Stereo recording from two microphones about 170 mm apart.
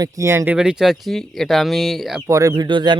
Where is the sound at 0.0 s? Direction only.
20° right (ahead or behind).